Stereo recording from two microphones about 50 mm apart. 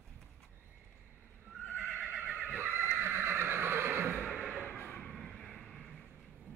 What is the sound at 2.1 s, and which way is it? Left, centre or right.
Neigh, right.